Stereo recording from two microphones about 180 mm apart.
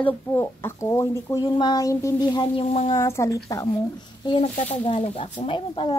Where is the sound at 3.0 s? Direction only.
15° left (ahead or behind).